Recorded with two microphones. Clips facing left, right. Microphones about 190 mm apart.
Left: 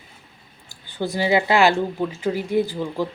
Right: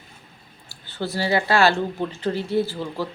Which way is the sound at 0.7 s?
15° left (ahead or behind).